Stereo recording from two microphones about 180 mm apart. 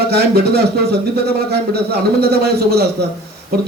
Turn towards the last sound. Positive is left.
turn(degrees=-60)  # may be behind; listen again after turning